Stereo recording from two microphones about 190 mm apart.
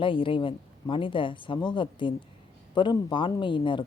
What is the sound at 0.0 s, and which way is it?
Speech, 25° left (ahead or behind).